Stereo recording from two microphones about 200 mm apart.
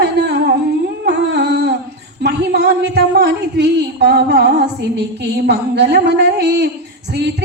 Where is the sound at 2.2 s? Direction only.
55° right (ahead or behind).